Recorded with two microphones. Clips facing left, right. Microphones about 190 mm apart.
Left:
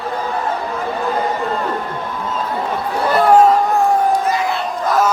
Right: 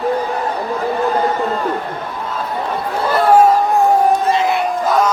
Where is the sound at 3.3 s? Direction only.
10° right (ahead or behind).